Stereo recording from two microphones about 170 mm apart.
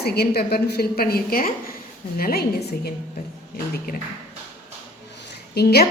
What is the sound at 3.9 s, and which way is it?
Speech, 65° left (ahead or behind).